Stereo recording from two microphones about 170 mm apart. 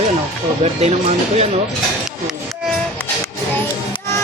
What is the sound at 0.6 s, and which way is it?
Speech, 40° right (ahead or behind).